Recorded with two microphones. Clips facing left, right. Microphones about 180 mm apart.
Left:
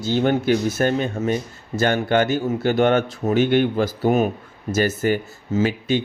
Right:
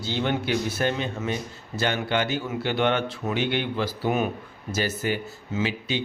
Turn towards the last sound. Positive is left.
turn(degrees=50)  # may be behind; listen again after turning